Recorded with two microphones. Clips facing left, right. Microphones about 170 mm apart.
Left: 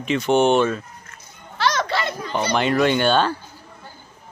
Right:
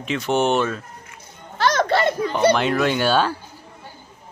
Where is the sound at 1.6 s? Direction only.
50° right (ahead or behind).